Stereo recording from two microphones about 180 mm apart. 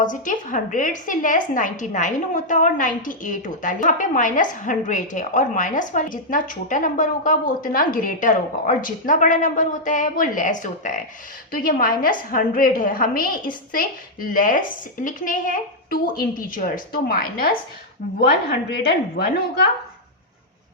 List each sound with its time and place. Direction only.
0.0 s a woman's voice: 45° left (ahead or behind)
18.8 s a woman's voice: 55° left (ahead or behind)